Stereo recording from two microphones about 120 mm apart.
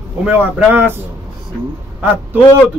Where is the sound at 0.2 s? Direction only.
10° right (ahead or behind).